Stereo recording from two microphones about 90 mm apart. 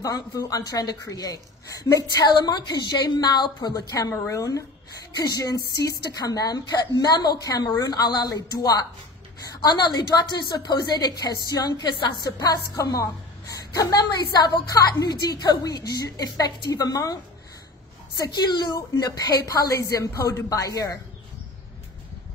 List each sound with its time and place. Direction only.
0.0 s a woman's voice: 40° left (ahead or behind)